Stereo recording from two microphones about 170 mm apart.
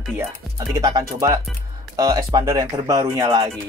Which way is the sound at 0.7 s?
20° right (ahead or behind).